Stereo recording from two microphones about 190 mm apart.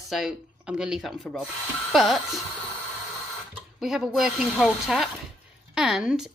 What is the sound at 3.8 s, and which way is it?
Speech, centre (ahead or behind).